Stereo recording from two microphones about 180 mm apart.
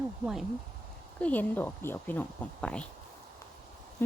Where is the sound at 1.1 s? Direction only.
10° left (ahead or behind).